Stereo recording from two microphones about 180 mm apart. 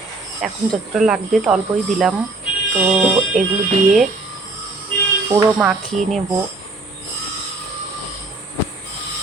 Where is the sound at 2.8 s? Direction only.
5° right (ahead or behind).